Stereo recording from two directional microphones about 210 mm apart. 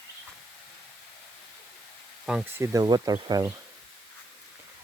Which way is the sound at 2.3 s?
10° right (ahead or behind).